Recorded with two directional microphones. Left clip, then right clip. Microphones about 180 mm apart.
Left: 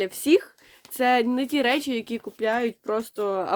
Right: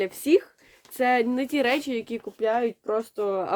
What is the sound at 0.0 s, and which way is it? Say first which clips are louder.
Speech: left 1 dB; 25° left (ahead or behind).